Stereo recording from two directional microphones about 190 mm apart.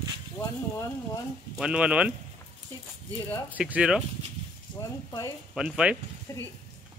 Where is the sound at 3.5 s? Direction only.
5° right (ahead or behind).